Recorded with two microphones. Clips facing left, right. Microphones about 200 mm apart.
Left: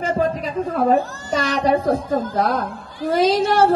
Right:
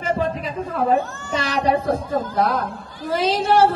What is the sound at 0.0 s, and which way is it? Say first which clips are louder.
A woman's voice: left 2 dB; 40° left (ahead or behind).